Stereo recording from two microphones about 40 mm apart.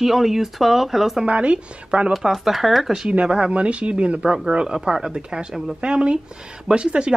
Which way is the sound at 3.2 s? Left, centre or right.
Right.